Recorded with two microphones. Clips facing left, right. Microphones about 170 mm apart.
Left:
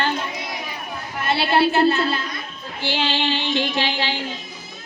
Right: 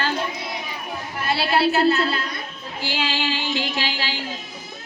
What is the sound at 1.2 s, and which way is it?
Speech, 25° left (ahead or behind).